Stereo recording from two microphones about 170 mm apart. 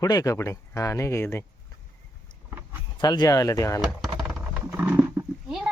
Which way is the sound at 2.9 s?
25° left (ahead or behind).